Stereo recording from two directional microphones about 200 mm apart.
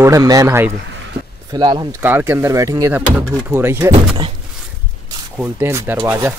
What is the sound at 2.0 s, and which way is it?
Speech, 10° right (ahead or behind).